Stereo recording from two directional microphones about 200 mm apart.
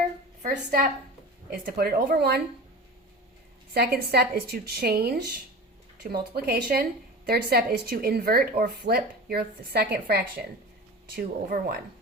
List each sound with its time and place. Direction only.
0.4 s a woman's voice: 45° right (ahead or behind)
3.8 s a woman's voice: 50° right (ahead or behind)